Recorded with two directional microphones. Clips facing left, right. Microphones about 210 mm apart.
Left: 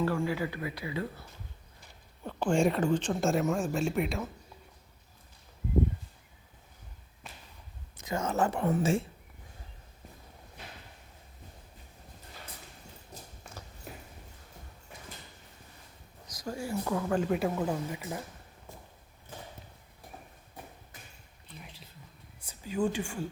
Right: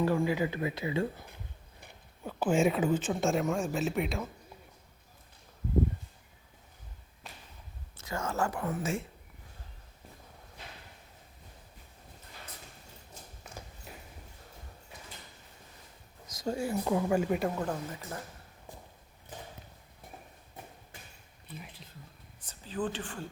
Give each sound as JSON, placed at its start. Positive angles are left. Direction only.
{"t": 0.0, "sound": "speech", "side_deg": -15}
{"t": 2.2, "sound": "speech", "side_deg": -5}
{"t": 7.9, "sound": "speech", "side_deg": 20}
{"t": 16.2, "sound": "speech", "side_deg": -25}
{"t": 17.1, "sound": "speech", "side_deg": -5}
{"t": 22.4, "sound": "speech", "side_deg": 10}